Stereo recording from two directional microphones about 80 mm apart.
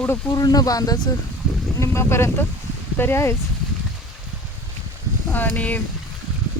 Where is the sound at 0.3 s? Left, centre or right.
Left.